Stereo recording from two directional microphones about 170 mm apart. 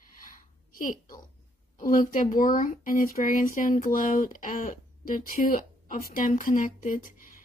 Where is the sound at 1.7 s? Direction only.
55° left (ahead or behind).